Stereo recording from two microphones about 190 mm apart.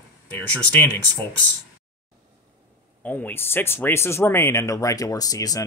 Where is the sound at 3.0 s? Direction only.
10° left (ahead or behind).